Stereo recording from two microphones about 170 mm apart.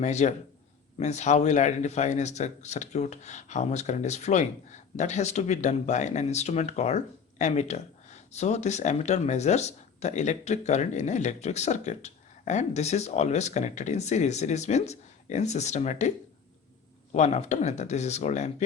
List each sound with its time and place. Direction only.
0.0 s speech: 45° left (ahead or behind)